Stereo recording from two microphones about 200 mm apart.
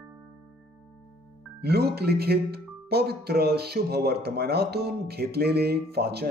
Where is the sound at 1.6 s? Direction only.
55° right (ahead or behind).